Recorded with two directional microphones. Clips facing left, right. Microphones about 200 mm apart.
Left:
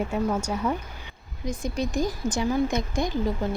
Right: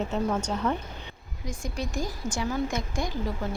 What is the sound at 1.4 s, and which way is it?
Speech, 20° left (ahead or behind).